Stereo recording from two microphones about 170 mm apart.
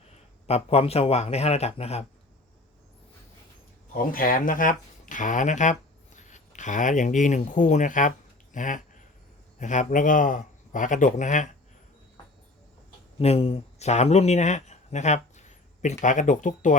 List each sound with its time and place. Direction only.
0.4 s speech: 35° left (ahead or behind)
3.9 s speech: 60° left (ahead or behind)
13.1 s a man's voice: 35° left (ahead or behind)